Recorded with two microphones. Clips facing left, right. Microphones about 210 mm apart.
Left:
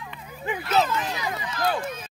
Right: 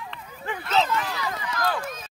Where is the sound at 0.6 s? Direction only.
25° left (ahead or behind).